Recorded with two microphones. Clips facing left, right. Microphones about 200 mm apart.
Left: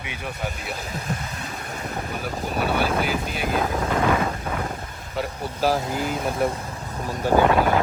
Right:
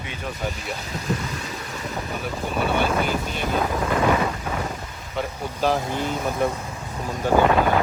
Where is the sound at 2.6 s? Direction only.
5° left (ahead or behind).